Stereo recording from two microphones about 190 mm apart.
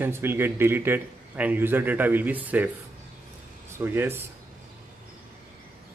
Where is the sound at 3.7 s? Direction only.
10° right (ahead or behind).